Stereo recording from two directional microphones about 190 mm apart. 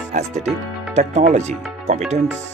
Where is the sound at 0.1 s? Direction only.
40° right (ahead or behind).